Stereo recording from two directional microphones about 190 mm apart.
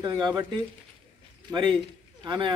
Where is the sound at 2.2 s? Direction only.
25° right (ahead or behind).